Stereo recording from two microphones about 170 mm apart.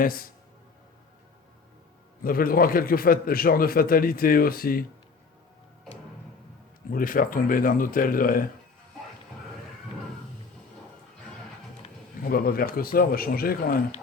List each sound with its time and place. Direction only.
0.0 s a man's voice: 55° left (ahead or behind)
2.2 s a man's voice: 60° left (ahead or behind)
6.9 s a man's voice: 55° left (ahead or behind)
12.2 s a man's voice: 60° left (ahead or behind)